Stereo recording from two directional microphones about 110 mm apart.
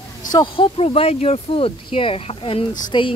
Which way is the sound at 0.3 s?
45° left (ahead or behind).